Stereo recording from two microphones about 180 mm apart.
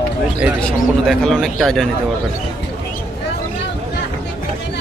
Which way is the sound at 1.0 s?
Centre (ahead or behind).